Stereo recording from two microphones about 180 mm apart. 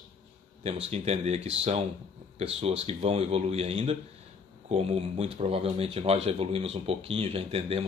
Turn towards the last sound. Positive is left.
turn(degrees=-35)  # may be behind; listen again after turning